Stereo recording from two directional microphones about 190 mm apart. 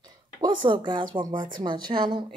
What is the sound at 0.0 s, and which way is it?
Speech, 20° right (ahead or behind).